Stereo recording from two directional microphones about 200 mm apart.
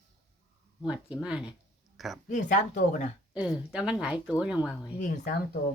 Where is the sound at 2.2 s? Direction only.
35° left (ahead or behind).